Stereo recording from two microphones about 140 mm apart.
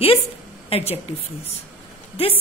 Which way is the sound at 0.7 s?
45° left (ahead or behind).